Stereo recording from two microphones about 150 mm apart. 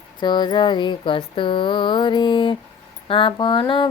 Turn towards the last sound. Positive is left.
turn(degrees=35)  # may be behind; listen again after turning